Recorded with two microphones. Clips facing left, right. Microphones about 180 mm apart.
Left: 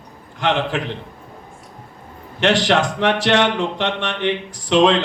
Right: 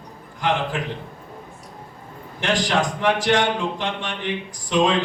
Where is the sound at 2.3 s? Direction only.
80° left.